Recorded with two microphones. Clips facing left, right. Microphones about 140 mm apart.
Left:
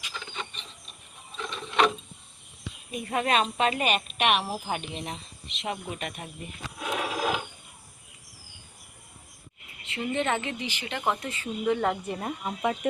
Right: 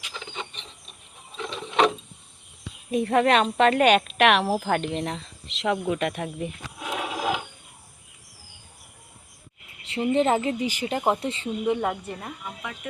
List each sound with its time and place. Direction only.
0.1 s wood: 20° right (ahead or behind)
1.4 s a sound: 20° right (ahead or behind)
2.9 s speech: 70° right (ahead or behind); by 4.9 s 90° right
4.9 s a sound: 90° right
5.9 s speech: 90° right
6.7 s a sound: 5° right (ahead or behind)
9.8 s a woman's voice: 30° right (ahead or behind)
11.6 s speech: 15° right (ahead or behind)
12.2 s speech: 30° left (ahead or behind)